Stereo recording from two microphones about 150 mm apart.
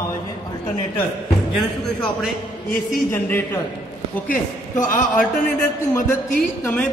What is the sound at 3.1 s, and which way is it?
Speech, 15° left (ahead or behind).